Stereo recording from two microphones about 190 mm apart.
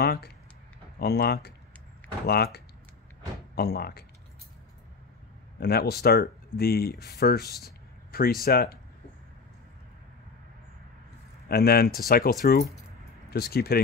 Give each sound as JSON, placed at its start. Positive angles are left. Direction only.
{"t": 0.0, "sound": "speech", "side_deg": 55}
{"t": 5.6, "sound": "speech", "side_deg": 55}
{"t": 11.4, "sound": "speech", "side_deg": 55}